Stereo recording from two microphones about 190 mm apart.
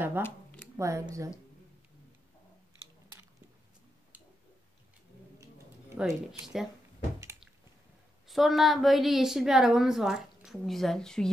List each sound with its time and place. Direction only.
0.7 s speech: 15° right (ahead or behind)
5.9 s a woman's voice: 5° right (ahead or behind)
8.3 s a woman's voice: centre (ahead or behind)